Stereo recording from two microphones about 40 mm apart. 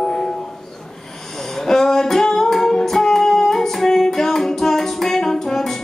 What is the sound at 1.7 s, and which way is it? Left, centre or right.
Singing, centre.